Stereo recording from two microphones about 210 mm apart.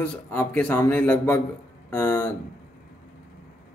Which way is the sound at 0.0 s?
10° left (ahead or behind).